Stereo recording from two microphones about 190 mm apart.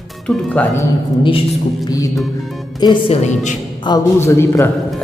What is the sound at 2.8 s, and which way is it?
Speech, 30° left (ahead or behind).